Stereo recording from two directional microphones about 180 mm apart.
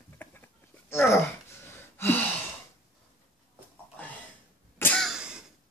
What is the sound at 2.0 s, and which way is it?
Gasp, 10° left (ahead or behind).